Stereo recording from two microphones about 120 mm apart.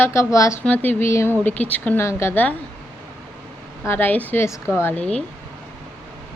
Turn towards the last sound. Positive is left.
turn(degrees=10)  # may be behind; listen again after turning